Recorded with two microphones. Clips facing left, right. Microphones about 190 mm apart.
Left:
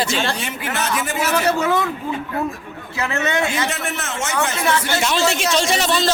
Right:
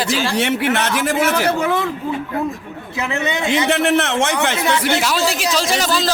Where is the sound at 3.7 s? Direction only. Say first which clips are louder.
Right 10 dB; 70° right (ahead or behind).